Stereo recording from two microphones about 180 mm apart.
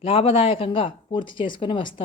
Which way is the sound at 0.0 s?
30° left (ahead or behind).